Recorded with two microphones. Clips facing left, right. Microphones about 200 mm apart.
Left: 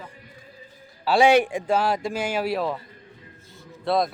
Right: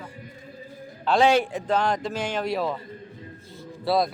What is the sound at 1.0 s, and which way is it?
A man's voice, 10° left (ahead or behind).